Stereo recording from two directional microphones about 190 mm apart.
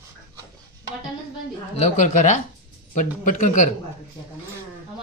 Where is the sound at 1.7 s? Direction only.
40° left (ahead or behind).